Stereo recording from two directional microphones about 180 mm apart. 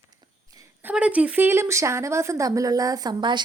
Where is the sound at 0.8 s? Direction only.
5° right (ahead or behind).